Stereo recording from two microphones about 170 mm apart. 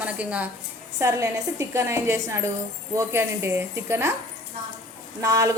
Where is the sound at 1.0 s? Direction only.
20° right (ahead or behind).